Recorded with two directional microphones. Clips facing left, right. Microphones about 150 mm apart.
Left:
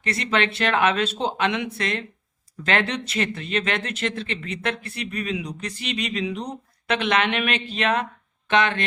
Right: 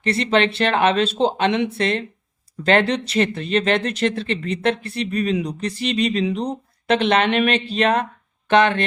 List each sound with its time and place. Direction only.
0.0 s speech: 30° right (ahead or behind)